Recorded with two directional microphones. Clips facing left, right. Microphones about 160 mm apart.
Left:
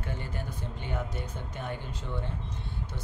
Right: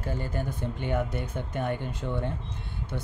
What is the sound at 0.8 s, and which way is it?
Speech, 60° right (ahead or behind).